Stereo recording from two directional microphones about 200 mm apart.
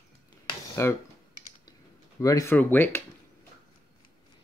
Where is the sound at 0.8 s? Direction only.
15° left (ahead or behind).